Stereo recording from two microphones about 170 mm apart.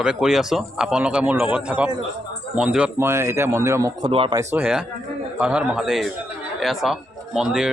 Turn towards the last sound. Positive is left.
turn(degrees=-5)  # may be behind; listen again after turning